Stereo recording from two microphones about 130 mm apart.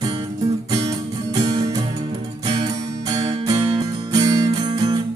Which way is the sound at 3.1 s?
25° right (ahead or behind).